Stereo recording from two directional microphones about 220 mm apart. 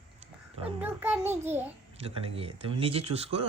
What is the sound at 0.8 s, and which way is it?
Speech, 10° right (ahead or behind).